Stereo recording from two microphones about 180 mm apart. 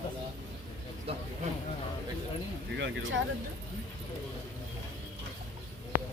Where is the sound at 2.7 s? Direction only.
90° right.